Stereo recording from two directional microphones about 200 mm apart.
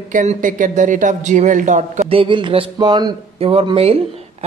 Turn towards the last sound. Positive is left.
turn(degrees=-30)  # may be behind; listen again after turning